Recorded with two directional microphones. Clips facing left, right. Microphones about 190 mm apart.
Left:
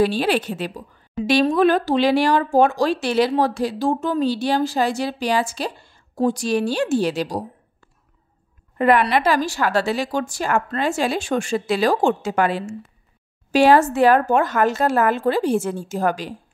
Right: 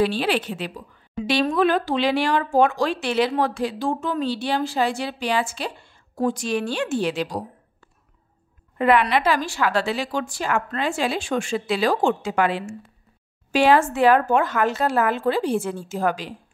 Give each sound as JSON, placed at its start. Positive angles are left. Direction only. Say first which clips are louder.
{"t": 0.0, "sound": "a woman's voice", "louder": "left 3 dB", "side_deg": 45}
{"t": 8.7, "sound": "a woman's voice", "louder": "left 2 dB", "side_deg": 45}